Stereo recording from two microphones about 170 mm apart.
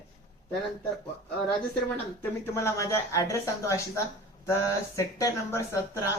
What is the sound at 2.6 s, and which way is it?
Speech, 15° left (ahead or behind).